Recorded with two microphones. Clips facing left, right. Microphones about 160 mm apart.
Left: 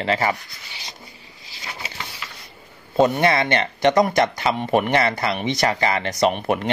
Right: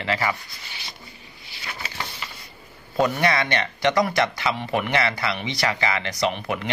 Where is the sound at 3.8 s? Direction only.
45° left (ahead or behind).